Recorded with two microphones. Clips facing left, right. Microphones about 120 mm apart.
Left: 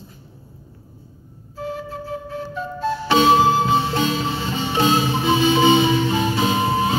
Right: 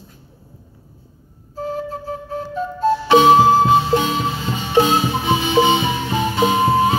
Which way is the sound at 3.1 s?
15° right (ahead or behind).